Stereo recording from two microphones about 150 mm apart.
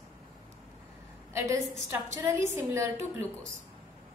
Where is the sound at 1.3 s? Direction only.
20° right (ahead or behind).